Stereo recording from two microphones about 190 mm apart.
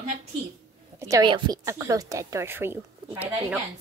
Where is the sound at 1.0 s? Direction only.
15° right (ahead or behind).